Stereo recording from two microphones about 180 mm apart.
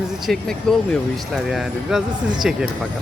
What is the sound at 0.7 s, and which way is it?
Speech, 5° left (ahead or behind).